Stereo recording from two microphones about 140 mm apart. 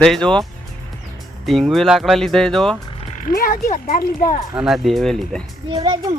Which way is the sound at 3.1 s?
80° left.